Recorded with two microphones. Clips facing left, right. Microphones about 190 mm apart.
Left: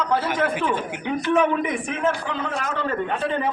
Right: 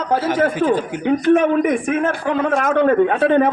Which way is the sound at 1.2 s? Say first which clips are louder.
Right 5 dB; 50° right (ahead or behind).